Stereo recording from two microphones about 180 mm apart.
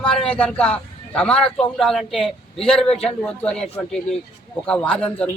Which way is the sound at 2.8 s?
35° left (ahead or behind).